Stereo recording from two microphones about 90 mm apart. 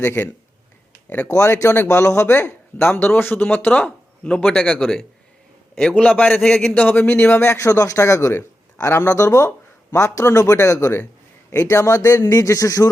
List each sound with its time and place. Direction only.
0.0 s speech: 25° left (ahead or behind)
1.3 s speech: 30° left (ahead or behind); by 6.2 s 15° left (ahead or behind)
6.4 s speech: 5° left (ahead or behind)
6.7 s speech: 20° left (ahead or behind)
7.7 s a man's voice: 35° left (ahead or behind)